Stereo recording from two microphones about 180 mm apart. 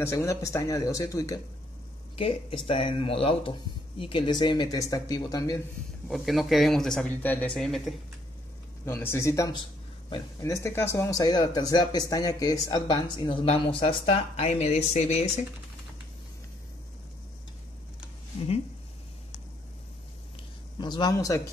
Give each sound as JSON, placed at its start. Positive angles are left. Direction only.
{"t": 0.0, "sound": "speech", "side_deg": 15}
{"t": 2.1, "sound": "speech", "side_deg": 30}
{"t": 6.0, "sound": "speech", "side_deg": 0}
{"t": 8.8, "sound": "speech", "side_deg": 15}
{"t": 20.7, "sound": "speech", "side_deg": 25}